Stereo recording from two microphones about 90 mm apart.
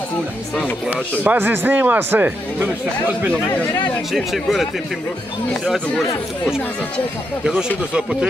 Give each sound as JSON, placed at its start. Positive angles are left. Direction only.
{"t": 0.8, "sound": "a man's voice", "side_deg": -20}
{"t": 4.1, "sound": "speech", "side_deg": 0}
{"t": 7.9, "sound": "speech", "side_deg": -10}